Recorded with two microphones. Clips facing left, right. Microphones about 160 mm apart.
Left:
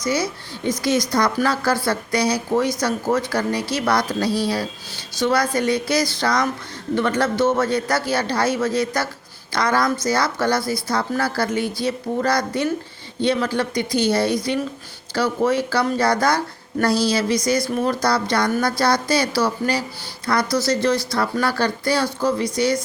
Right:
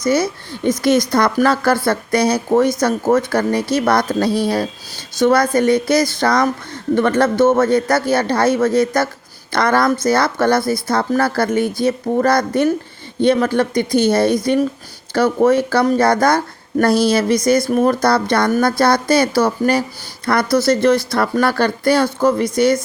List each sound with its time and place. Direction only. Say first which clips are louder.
0.0 s speech: right 6 dB; 55° right (ahead or behind)